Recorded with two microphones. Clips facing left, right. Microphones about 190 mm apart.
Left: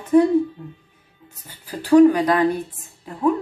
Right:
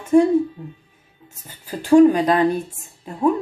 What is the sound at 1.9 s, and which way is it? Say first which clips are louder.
Speech: even; 25° right (ahead or behind).